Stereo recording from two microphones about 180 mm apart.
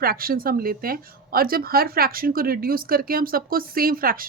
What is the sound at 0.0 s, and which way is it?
Speech, 55° right (ahead or behind).